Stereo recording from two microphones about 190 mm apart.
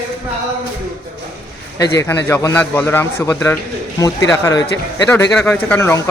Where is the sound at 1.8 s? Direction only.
15° left (ahead or behind).